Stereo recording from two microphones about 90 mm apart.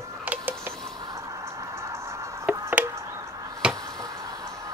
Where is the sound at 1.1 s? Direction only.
35° right (ahead or behind).